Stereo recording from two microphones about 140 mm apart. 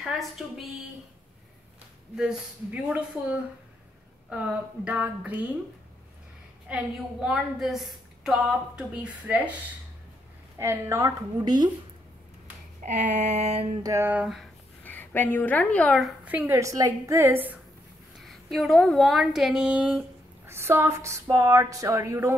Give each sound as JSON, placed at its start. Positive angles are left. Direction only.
{"t": 0.0, "sound": "a woman's voice", "side_deg": 0}
{"t": 2.1, "sound": "speech", "side_deg": -10}
{"t": 6.7, "sound": "a woman's voice", "side_deg": -5}
{"t": 10.6, "sound": "speech", "side_deg": -20}
{"t": 12.8, "sound": "a sound", "side_deg": -55}
{"t": 13.8, "sound": "speech", "side_deg": -15}
{"t": 14.8, "sound": "speech", "side_deg": 15}
{"t": 16.3, "sound": "speech", "side_deg": -15}
{"t": 18.2, "sound": "a woman's voice", "side_deg": 0}